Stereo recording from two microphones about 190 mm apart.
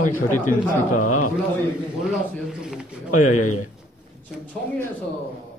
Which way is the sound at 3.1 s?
40° left (ahead or behind).